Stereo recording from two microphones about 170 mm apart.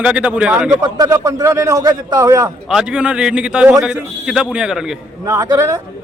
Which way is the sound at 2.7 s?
5° right (ahead or behind).